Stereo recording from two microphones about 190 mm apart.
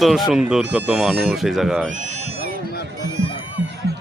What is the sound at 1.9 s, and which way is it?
Speech, 40° right (ahead or behind).